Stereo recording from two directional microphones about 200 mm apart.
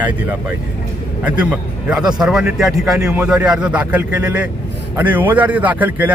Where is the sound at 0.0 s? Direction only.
10° right (ahead or behind).